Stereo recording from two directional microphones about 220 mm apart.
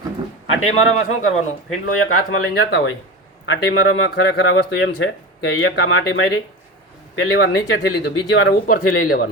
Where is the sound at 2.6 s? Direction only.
50° left (ahead or behind).